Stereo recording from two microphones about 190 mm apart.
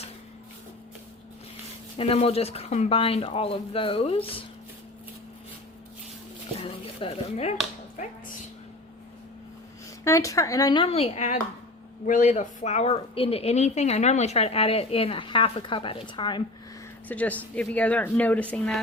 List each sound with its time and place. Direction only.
2.0 s speech: 30° left (ahead or behind)
6.6 s a sound: 30° left (ahead or behind)
10.0 s speech: 15° left (ahead or behind)
10.8 s speech: 30° left (ahead or behind)
17.1 s speech: 10° left (ahead or behind)